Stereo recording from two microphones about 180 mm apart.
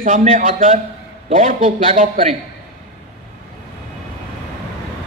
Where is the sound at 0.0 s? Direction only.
45° right (ahead or behind).